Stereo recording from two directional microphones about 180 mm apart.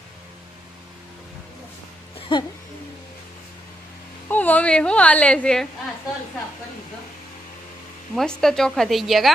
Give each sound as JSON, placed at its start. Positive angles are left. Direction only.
{"t": 2.1, "sound": "music", "side_deg": 30}
{"t": 4.3, "sound": "a woman's voice", "side_deg": 10}
{"t": 8.2, "sound": "a woman's voice", "side_deg": 0}